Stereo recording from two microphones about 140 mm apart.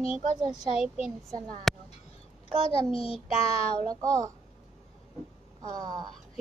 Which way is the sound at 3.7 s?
30° right (ahead or behind).